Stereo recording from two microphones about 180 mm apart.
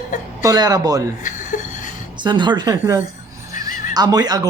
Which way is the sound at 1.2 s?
45° left (ahead or behind).